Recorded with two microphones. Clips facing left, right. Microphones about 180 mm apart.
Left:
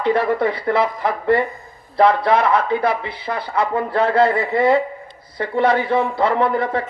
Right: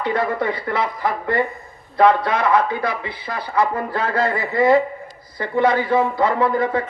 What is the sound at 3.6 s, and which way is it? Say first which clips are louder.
A man's voice: left 2 dB; 30° left (ahead or behind).